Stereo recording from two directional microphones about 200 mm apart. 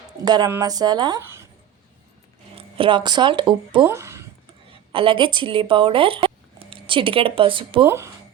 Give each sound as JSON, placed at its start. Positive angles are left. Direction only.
{"t": 0.3, "sound": "speech", "side_deg": -20}
{"t": 2.6, "sound": "speech", "side_deg": -25}
{"t": 3.8, "sound": "speech", "side_deg": -10}
{"t": 4.9, "sound": "speech", "side_deg": -25}
{"t": 7.9, "sound": "speech", "side_deg": -15}